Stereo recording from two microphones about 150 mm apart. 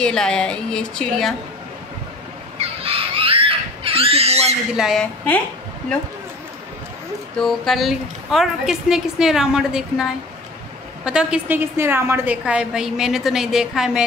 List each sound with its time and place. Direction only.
0.0 s a woman's voice: 5° left (ahead or behind)
2.6 s a sound: 40° right (ahead or behind)
4.7 s a woman's voice: centre (ahead or behind)
7.3 s a woman's voice: 5° left (ahead or behind)